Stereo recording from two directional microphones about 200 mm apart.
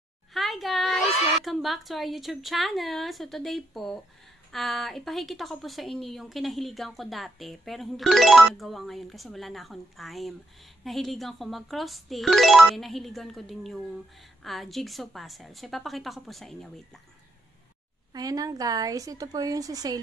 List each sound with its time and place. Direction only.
0.3 s a sound: centre (ahead or behind)
1.4 s a woman's voice: centre (ahead or behind)
18.1 s a woman's voice: 20° right (ahead or behind)